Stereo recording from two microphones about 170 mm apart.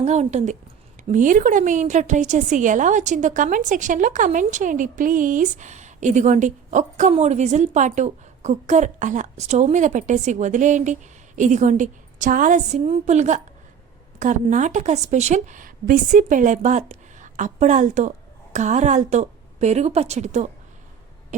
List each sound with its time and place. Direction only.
0.0 s a woman's voice: 40° right (ahead or behind)